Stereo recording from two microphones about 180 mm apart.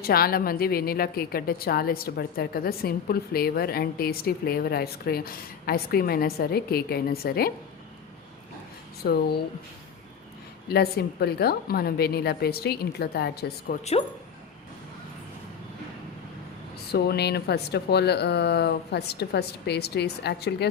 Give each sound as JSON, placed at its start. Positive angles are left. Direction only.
{"t": 0.0, "sound": "a woman's voice", "side_deg": 55}
{"t": 9.0, "sound": "a woman's voice", "side_deg": 60}
{"t": 10.7, "sound": "a woman's voice", "side_deg": 60}
{"t": 16.9, "sound": "a woman's voice", "side_deg": 65}